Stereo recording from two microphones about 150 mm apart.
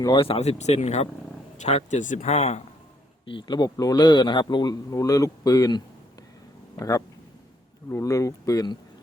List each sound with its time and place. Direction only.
0.0 s speech: 35° left (ahead or behind)
3.2 s a man's voice: 30° left (ahead or behind)